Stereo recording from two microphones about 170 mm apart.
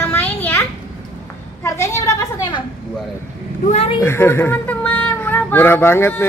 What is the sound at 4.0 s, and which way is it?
A woman's voice, 15° left (ahead or behind).